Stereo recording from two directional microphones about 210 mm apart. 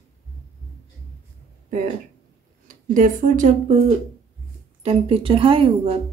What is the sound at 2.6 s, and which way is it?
Speech, 40° right (ahead or behind).